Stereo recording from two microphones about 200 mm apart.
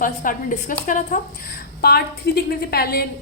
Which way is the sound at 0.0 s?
40° left (ahead or behind).